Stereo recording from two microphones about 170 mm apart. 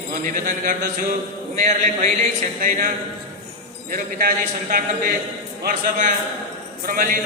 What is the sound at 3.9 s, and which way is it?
A man's voice, 60° right (ahead or behind).